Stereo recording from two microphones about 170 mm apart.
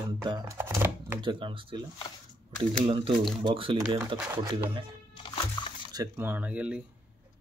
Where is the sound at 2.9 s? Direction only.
30° right (ahead or behind).